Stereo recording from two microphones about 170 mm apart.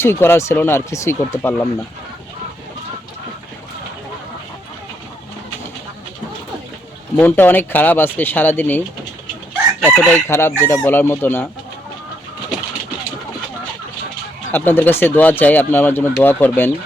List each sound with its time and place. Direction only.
0.0 s speech: 15° left (ahead or behind)
7.2 s speech: 10° left (ahead or behind)
9.8 s chicken: 5° right (ahead or behind)
10.2 s speech: 15° left (ahead or behind)
14.5 s speech: 10° left (ahead or behind)